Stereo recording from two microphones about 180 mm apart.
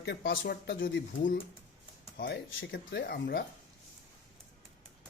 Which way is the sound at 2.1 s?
75° left (ahead or behind).